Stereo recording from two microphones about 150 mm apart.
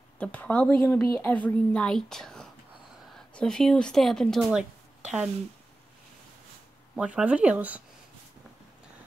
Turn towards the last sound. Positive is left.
turn(degrees=-10)  # may be behind; listen again after turning